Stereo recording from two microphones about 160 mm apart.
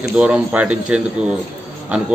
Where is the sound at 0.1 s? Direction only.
5° right (ahead or behind).